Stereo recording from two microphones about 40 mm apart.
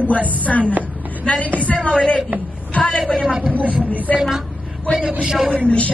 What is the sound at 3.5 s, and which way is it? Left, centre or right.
Speech, right.